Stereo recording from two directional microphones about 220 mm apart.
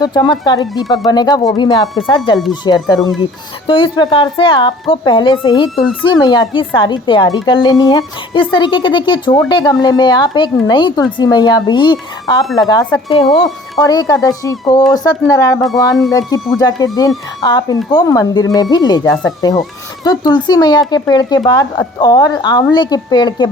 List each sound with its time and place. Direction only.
0.0 s speech: 20° left (ahead or behind)